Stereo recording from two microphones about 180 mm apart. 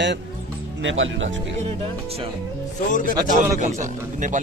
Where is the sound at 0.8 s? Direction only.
90° right.